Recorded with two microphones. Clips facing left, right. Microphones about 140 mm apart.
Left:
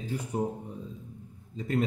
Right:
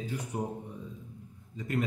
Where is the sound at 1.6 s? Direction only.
30° left (ahead or behind).